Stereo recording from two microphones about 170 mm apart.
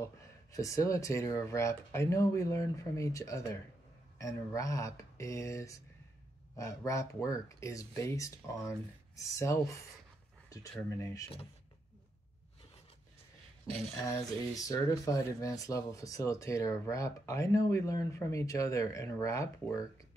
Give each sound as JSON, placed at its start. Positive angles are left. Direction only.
{"t": 0.0, "sound": "speech", "side_deg": 20}
{"t": 11.0, "sound": "speech", "side_deg": 20}
{"t": 14.0, "sound": "speech", "side_deg": 20}